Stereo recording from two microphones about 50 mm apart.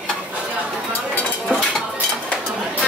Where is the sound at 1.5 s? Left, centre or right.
Right.